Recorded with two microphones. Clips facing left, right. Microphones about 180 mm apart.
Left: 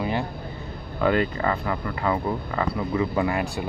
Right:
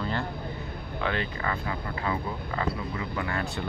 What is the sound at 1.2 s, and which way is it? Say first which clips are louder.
Speech: left 7 dB; 40° left (ahead or behind).